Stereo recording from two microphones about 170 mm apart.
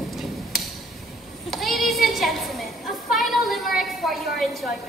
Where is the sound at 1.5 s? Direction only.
Centre (ahead or behind).